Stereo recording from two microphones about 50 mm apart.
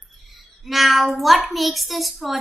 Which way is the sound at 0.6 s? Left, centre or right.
Centre.